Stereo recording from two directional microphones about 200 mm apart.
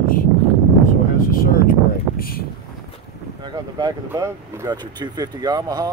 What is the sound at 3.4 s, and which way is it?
Speech, 20° right (ahead or behind).